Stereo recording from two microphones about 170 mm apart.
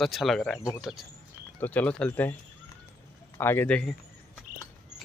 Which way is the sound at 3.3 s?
15° left (ahead or behind).